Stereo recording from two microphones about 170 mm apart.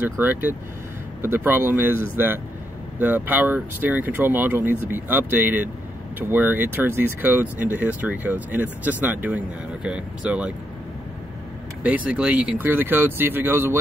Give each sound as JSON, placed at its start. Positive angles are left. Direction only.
{"t": 0.0, "sound": "speech", "side_deg": -10}
{"t": 11.8, "sound": "speech", "side_deg": -10}